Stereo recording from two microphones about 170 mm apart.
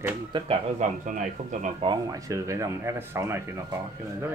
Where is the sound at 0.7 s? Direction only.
50° right (ahead or behind).